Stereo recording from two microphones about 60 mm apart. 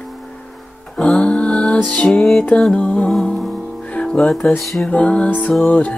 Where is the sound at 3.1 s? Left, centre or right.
Centre; by 6.0 s left.